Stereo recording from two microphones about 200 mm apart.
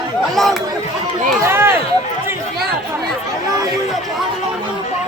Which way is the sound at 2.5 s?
50° right (ahead or behind).